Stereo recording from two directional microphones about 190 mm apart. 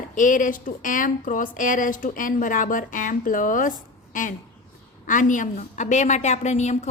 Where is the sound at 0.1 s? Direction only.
45° left (ahead or behind).